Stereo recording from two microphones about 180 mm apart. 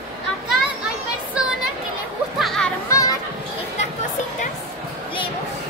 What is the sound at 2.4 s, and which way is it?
Music, centre (ahead or behind).